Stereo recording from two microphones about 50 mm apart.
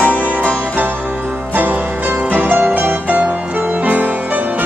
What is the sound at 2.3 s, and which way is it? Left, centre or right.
Music, right.